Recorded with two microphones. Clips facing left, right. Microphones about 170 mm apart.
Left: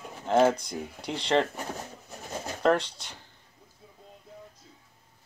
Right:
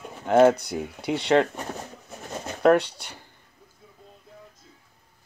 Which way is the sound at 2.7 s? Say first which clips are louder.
Right 6 dB; 60° right (ahead or behind).